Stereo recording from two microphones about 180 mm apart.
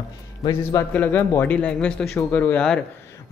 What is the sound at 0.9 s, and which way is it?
Speech, 10° left (ahead or behind).